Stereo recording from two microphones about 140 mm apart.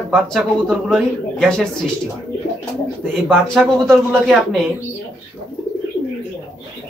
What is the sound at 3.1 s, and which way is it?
Speech, centre (ahead or behind).